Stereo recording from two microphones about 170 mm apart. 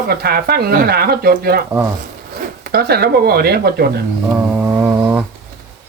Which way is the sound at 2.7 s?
65° right (ahead or behind).